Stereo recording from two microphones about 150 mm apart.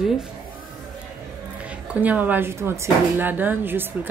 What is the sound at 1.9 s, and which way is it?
Speech, 10° right (ahead or behind).